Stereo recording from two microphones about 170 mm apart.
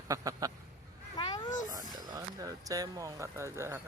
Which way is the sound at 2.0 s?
20° right (ahead or behind).